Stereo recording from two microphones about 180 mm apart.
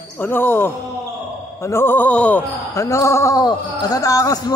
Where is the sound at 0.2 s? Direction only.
10° left (ahead or behind).